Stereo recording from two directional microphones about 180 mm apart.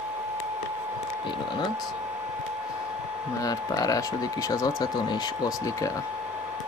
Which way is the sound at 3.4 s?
20° left (ahead or behind).